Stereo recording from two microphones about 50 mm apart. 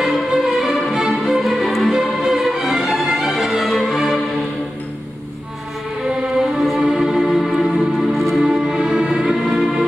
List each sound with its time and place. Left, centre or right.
0.0 s music: centre
6.5 s music: centre
8.5 s music: centre